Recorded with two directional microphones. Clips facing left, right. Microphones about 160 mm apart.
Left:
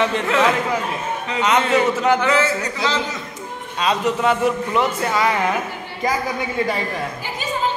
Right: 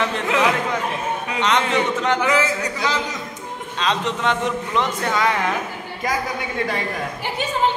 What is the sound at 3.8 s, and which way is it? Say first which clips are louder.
A man's voice: left 3 dB; 5° left (ahead or behind).